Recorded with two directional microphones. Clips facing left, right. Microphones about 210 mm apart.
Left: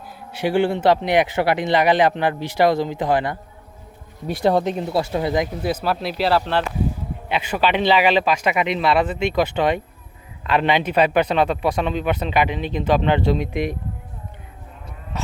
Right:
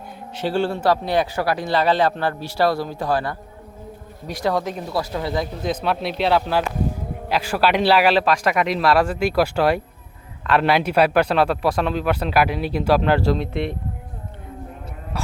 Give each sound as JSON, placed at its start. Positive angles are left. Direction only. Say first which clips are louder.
{"t": 0.3, "sound": "speech", "louder": "left 3 dB", "side_deg": 15}
{"t": 4.4, "sound": "speech", "louder": "left 4 dB", "side_deg": 25}
{"t": 5.6, "sound": "a man's voice", "louder": "even", "side_deg": 5}
{"t": 13.4, "sound": "speech", "louder": "left 1 dB", "side_deg": 15}